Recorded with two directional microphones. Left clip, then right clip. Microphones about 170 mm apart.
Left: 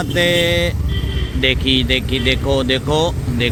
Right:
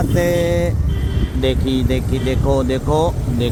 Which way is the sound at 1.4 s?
55° right (ahead or behind).